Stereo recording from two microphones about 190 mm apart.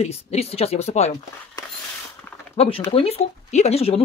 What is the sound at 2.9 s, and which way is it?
Speech, 30° left (ahead or behind).